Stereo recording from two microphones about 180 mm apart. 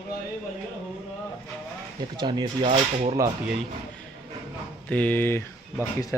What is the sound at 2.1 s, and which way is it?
Speech, 25° right (ahead or behind).